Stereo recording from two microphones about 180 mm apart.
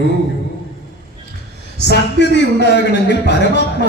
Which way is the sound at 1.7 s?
70° left (ahead or behind).